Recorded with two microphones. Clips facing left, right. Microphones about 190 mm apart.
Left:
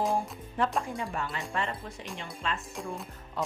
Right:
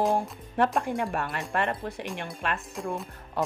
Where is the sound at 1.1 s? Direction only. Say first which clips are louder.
Right 4 dB; 60° right (ahead or behind).